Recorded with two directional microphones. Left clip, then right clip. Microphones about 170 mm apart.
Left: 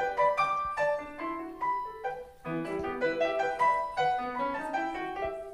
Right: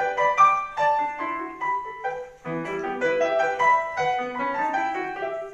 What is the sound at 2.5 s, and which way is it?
Music, 10° left (ahead or behind).